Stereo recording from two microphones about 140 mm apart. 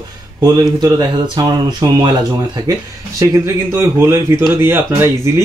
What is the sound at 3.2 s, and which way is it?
Speech, 20° right (ahead or behind).